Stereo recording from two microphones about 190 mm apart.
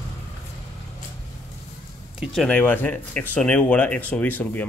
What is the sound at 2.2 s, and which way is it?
Speech, centre (ahead or behind).